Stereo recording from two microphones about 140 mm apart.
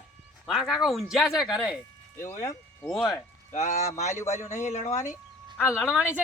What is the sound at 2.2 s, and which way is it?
Speech, 20° left (ahead or behind).